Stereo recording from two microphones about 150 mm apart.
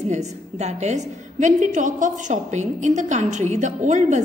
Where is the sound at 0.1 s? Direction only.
50° right (ahead or behind).